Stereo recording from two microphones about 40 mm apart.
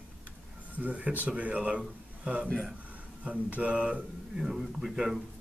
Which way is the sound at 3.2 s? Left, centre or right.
Right.